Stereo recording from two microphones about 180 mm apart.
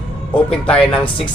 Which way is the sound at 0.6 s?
5° left (ahead or behind).